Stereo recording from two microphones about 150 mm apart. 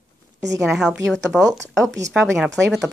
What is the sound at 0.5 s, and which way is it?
Speech, centre (ahead or behind).